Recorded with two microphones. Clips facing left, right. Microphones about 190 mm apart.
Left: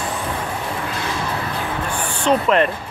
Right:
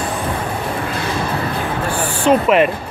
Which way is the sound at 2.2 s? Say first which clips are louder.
Right 4 dB; 10° right (ahead or behind).